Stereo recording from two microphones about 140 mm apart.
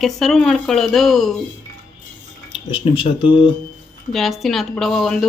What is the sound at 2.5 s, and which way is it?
Speech, 40° left (ahead or behind).